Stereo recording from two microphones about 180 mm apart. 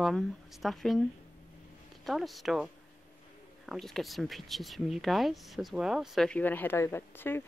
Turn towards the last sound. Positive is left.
turn(degrees=10)  # may be behind; listen again after turning